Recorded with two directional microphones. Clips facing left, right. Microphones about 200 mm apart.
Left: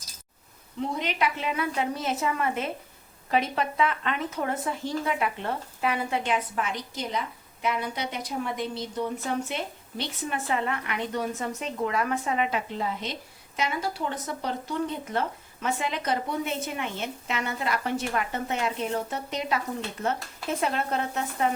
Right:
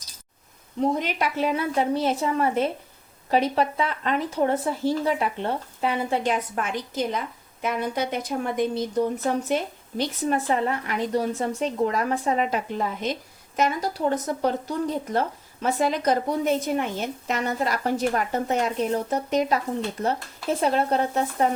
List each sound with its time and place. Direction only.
0.8 s a woman's voice: 45° right (ahead or behind); by 6.1 s 30° right (ahead or behind)
6.2 s a woman's voice: 45° right (ahead or behind)